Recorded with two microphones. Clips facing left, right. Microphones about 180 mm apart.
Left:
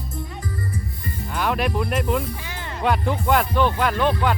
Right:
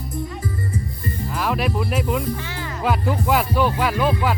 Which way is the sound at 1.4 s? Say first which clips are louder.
Left 1 dB; centre (ahead or behind).